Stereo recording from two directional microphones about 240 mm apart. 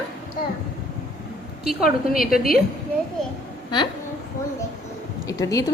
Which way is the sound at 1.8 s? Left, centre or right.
Left.